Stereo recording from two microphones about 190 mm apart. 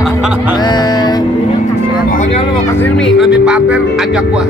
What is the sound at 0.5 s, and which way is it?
Speech, 20° left (ahead or behind).